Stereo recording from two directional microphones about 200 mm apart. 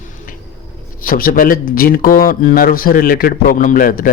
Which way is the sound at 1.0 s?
45° left (ahead or behind).